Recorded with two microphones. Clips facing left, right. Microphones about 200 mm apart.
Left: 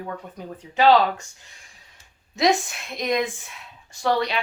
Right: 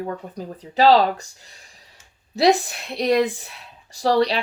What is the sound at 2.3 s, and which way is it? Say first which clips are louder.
Speech: right 4 dB; 35° right (ahead or behind).